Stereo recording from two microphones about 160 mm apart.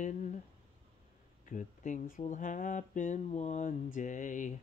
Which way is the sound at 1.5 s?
50° left (ahead or behind).